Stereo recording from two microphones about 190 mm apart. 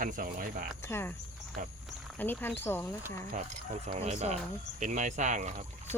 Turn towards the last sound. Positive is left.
turn(degrees=-40)  # may be behind; listen again after turning